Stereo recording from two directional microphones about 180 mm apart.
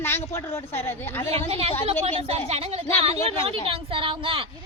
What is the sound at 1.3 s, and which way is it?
Speech, 35° right (ahead or behind).